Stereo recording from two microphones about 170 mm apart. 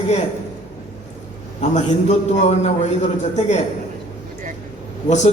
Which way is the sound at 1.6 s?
45° left (ahead or behind).